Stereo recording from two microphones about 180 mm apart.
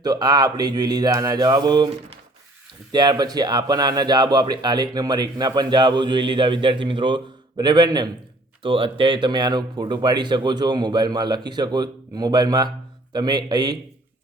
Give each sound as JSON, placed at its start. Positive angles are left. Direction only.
{"t": 0.0, "sound": "speech", "side_deg": -20}